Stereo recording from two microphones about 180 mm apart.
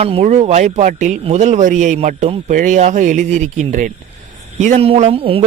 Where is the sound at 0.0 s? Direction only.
35° right (ahead or behind).